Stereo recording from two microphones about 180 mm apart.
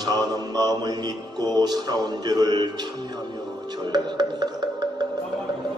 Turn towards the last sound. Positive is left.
turn(degrees=-25)  # may be behind; listen again after turning